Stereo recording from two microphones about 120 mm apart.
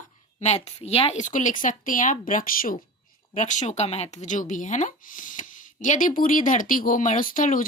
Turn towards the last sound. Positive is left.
turn(degrees=90)